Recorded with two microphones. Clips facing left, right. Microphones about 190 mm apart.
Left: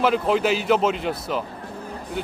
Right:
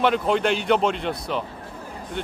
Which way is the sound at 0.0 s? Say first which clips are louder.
Left 1 dB; centre (ahead or behind).